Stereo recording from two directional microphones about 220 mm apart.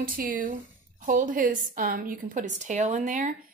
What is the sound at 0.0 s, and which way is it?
A woman's voice, 40° right (ahead or behind).